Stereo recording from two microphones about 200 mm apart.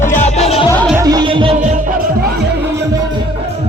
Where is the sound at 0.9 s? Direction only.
20° right (ahead or behind).